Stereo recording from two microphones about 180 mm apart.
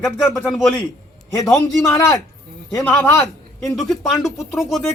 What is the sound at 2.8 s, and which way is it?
Speech, 5° left (ahead or behind).